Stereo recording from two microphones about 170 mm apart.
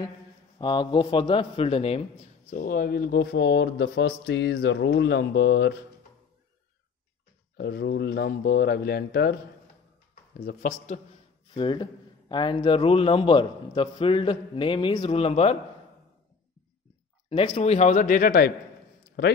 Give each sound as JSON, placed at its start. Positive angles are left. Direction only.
{"t": 0.6, "sound": "a man's voice", "side_deg": 25}
{"t": 2.5, "sound": "speech", "side_deg": 60}
{"t": 7.5, "sound": "speech", "side_deg": 75}
{"t": 10.3, "sound": "speech", "side_deg": 60}
{"t": 11.5, "sound": "a man's voice", "side_deg": 30}
{"t": 17.3, "sound": "speech", "side_deg": 40}